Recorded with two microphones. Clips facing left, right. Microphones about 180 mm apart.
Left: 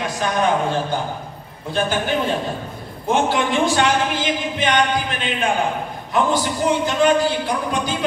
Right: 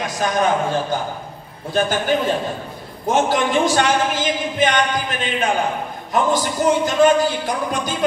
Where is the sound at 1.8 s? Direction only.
45° right (ahead or behind).